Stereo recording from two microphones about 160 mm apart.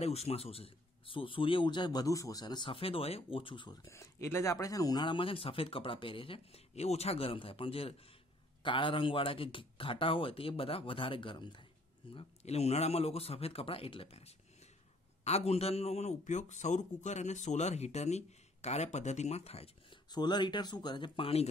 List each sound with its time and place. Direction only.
0.0 s speech: 40° left (ahead or behind)
20.1 s speech: 25° left (ahead or behind)